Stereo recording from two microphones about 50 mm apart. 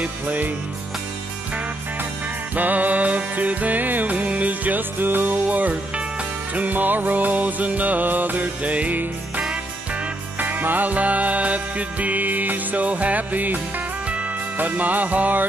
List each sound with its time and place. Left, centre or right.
2.5 s music: right
10.4 s music: right
14.6 s music: right